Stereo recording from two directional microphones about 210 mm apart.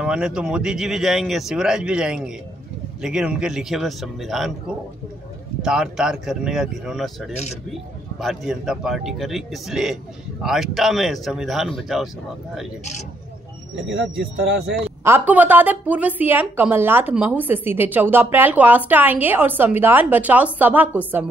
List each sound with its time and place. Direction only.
0.0 s speech: 5° right (ahead or behind)
13.7 s speech: 60° right (ahead or behind)
15.0 s a woman's voice: 10° right (ahead or behind)